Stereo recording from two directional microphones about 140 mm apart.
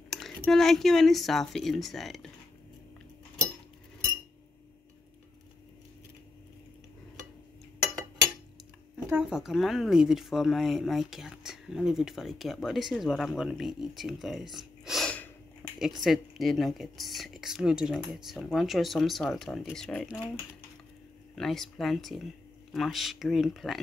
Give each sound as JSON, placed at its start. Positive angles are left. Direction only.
{"t": 0.1, "sound": "speech", "side_deg": 0}
{"t": 9.0, "sound": "speech", "side_deg": -10}
{"t": 14.9, "sound": "a sound", "side_deg": 5}
{"t": 16.0, "sound": "speech", "side_deg": 0}
{"t": 21.4, "sound": "speech", "side_deg": 0}